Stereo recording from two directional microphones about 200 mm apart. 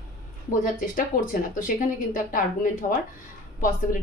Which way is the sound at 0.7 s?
45° left (ahead or behind).